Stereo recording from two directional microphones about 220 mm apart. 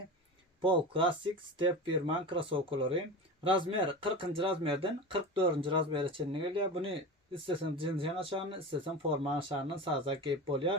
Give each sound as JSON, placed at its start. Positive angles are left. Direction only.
{"t": 0.6, "sound": "speech", "side_deg": -25}